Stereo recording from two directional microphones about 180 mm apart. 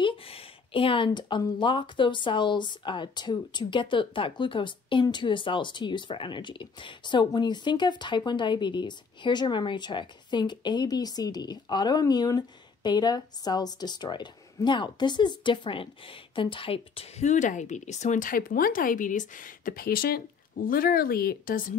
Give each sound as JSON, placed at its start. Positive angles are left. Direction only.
{"t": 0.0, "sound": "speech", "side_deg": 30}